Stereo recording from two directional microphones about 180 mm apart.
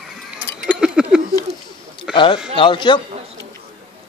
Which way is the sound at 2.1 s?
30° left (ahead or behind).